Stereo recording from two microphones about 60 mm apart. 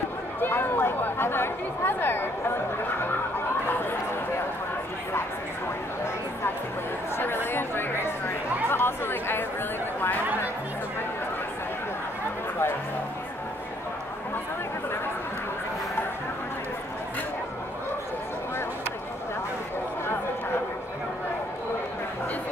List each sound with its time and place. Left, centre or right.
0.4 s speech: left
7.2 s speech: left